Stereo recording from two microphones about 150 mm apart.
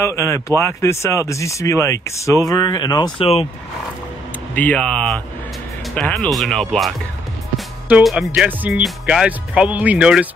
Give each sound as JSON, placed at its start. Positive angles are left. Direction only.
{"t": 0.0, "sound": "speech", "side_deg": 20}
{"t": 4.6, "sound": "speech", "side_deg": 10}
{"t": 7.9, "sound": "speech", "side_deg": 0}